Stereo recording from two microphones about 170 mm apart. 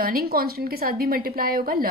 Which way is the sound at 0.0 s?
60° right (ahead or behind).